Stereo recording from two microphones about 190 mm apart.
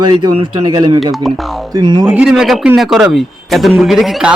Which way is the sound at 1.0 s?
Centre (ahead or behind).